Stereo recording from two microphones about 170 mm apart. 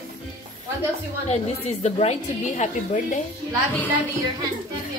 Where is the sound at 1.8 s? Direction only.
45° left (ahead or behind).